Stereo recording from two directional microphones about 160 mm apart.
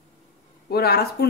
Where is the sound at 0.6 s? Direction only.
80° left.